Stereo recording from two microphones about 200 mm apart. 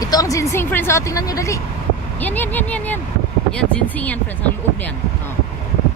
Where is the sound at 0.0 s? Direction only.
15° left (ahead or behind).